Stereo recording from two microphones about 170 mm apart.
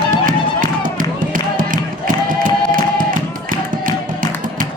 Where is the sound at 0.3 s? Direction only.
50° right (ahead or behind).